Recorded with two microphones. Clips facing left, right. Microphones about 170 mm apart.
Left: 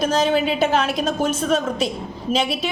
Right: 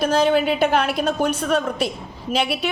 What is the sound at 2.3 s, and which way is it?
Speech, 60° right (ahead or behind).